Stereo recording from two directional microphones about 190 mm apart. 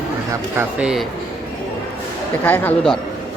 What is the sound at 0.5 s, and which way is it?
Speech, 10° right (ahead or behind).